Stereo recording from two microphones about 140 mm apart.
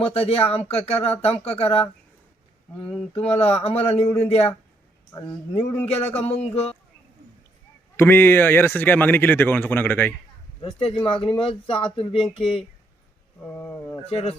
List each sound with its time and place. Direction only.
0.0 s speech: 45° left (ahead or behind)
3.2 s speech: 45° left (ahead or behind)
5.1 s speech: 35° left (ahead or behind)
5.5 s speech: 45° left (ahead or behind)
7.9 s speech: 15° left (ahead or behind)
10.6 s speech: 35° left (ahead or behind)
13.4 s speech: 15° left (ahead or behind)
14.1 s speech: 45° left (ahead or behind)